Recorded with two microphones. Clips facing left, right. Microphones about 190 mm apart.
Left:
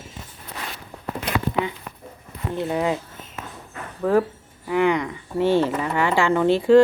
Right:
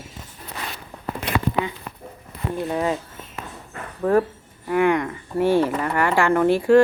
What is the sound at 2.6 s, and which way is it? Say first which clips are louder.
Speech: left 1 dB; 15° left (ahead or behind).